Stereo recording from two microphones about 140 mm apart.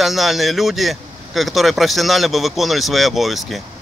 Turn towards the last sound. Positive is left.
turn(degrees=0)  # may be behind; listen again after turning